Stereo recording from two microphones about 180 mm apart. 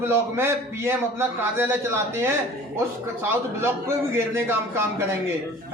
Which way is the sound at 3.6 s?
15° right (ahead or behind).